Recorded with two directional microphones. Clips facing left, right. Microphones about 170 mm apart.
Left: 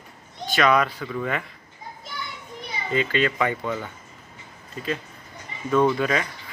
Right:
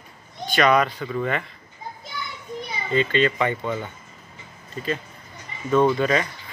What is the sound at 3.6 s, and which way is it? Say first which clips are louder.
Speech: right 1 dB; 20° right (ahead or behind).